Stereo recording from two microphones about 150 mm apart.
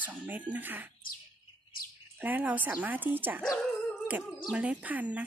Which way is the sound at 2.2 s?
10° right (ahead or behind).